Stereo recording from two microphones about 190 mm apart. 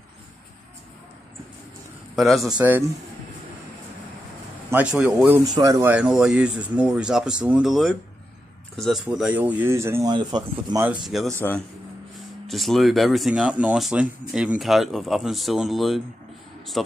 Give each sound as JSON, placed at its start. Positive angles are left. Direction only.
{"t": 2.1, "sound": "speech", "side_deg": 0}
{"t": 4.6, "sound": "speech", "side_deg": -5}
{"t": 5.5, "sound": "speech", "side_deg": -20}
{"t": 11.1, "sound": "speech", "side_deg": 0}
{"t": 12.4, "sound": "speech", "side_deg": 0}